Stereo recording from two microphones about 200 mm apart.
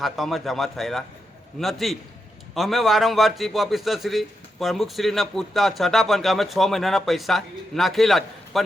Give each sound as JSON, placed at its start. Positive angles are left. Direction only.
{"t": 0.0, "sound": "a man's voice", "side_deg": 0}